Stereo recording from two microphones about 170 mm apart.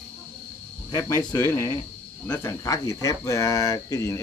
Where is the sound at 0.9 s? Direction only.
20° left (ahead or behind).